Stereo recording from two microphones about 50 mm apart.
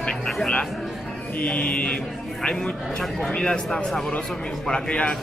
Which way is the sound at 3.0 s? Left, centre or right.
Centre.